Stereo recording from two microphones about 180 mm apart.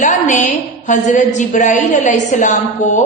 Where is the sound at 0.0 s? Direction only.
45° left (ahead or behind).